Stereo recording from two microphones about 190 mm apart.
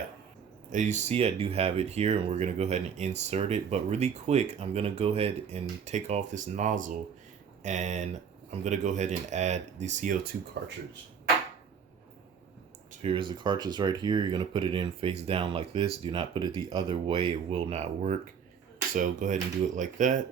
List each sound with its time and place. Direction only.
0.7 s speech: 40° right (ahead or behind)
12.9 s speech: 30° right (ahead or behind)